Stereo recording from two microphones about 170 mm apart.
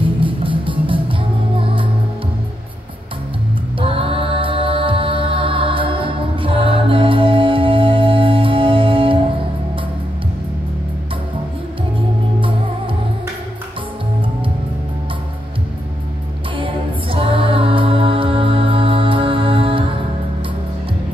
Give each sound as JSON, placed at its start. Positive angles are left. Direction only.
{"t": 0.0, "sound": "music", "side_deg": -30}
{"t": 3.8, "sound": "music", "side_deg": -30}
{"t": 12.4, "sound": "music", "side_deg": -30}
{"t": 16.5, "sound": "music", "side_deg": -30}